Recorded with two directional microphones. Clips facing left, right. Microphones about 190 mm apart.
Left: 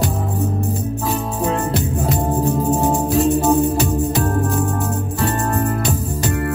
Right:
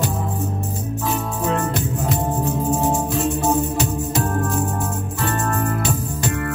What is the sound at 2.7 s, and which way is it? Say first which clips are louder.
Music: left 2 dB; 35° left (ahead or behind).